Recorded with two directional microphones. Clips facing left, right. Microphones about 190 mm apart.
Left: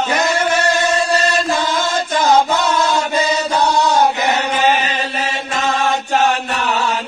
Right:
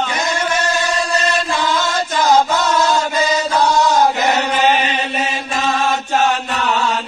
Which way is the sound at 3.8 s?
15° left (ahead or behind).